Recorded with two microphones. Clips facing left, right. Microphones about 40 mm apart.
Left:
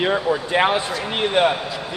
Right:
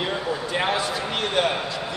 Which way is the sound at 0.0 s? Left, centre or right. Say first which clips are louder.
Left 6 dB; left.